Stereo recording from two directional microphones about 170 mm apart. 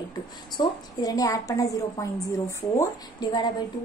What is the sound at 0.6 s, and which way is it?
A woman's voice, 20° left (ahead or behind).